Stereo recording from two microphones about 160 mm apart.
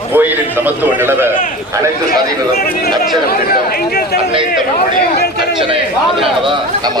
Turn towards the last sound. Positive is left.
turn(degrees=-30)  # may be behind; listen again after turning